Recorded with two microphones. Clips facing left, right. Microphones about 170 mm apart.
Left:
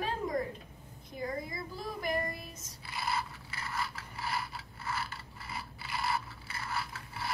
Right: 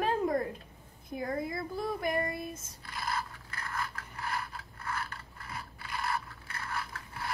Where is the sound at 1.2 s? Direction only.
55° right (ahead or behind).